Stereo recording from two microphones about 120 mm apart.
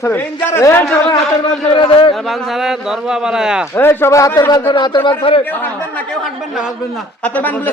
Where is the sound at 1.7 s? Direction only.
45° left (ahead or behind).